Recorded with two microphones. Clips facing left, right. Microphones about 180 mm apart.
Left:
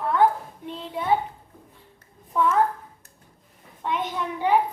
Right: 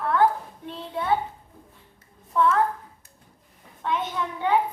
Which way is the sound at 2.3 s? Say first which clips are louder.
Right 1 dB; 15° left (ahead or behind).